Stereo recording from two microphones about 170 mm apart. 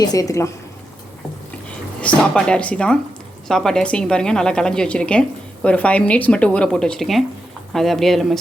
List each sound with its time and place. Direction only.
0.0 s a woman's voice: 20° left (ahead or behind)
2.0 s a woman's voice: 5° left (ahead or behind)